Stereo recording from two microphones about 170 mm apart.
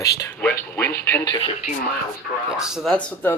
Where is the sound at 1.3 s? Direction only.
35° left (ahead or behind).